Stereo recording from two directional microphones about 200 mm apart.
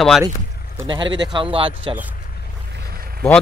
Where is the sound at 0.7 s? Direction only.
25° right (ahead or behind).